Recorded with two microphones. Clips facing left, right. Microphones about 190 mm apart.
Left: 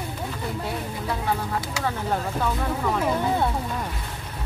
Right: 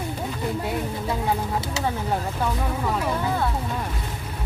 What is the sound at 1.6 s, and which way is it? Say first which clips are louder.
Speech: right 1 dB; 25° right (ahead or behind).